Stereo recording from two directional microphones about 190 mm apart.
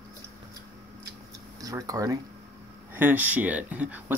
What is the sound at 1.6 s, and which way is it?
Speech, 20° right (ahead or behind).